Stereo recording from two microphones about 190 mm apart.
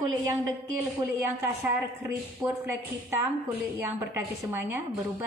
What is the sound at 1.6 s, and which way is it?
A woman's voice, 10° right (ahead or behind).